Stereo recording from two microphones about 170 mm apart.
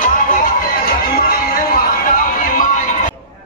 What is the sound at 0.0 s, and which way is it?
Music, 55° left (ahead or behind).